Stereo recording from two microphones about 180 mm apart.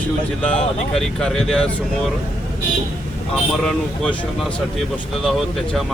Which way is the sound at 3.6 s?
5° left (ahead or behind).